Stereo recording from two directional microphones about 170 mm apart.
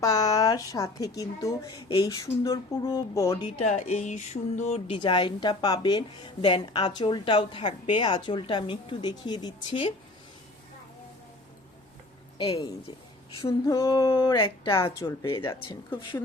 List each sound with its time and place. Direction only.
0.0 s a woman's voice: 20° left (ahead or behind)
3.4 s speech: 40° left (ahead or behind)
4.9 s a woman's voice: 30° left (ahead or behind)
13.5 s a woman's voice: 20° left (ahead or behind)